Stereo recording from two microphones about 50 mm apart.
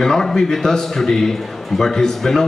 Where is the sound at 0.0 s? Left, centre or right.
Centre.